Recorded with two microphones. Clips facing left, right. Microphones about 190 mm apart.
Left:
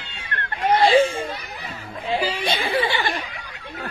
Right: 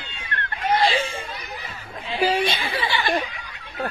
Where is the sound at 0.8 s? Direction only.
30° left (ahead or behind).